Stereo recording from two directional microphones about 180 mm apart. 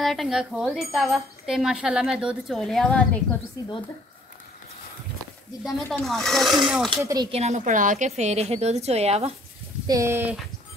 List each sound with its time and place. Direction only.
0.0 s speech: centre (ahead or behind)
5.6 s speech: centre (ahead or behind)
7.0 s speech: 20° right (ahead or behind)
7.2 s a woman's voice: 35° right (ahead or behind)
9.8 s speech: 15° right (ahead or behind)